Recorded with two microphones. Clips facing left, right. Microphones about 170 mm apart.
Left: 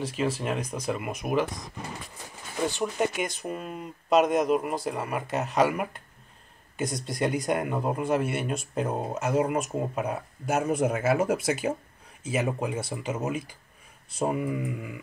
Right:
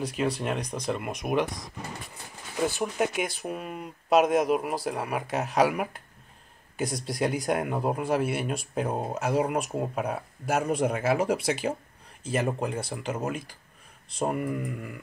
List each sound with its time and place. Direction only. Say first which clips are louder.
0.0 s speech: even; centre (ahead or behind)
2.7 s speech: even; 5° right (ahead or behind)